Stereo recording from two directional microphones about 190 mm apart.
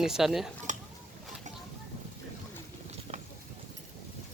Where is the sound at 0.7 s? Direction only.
40° right (ahead or behind).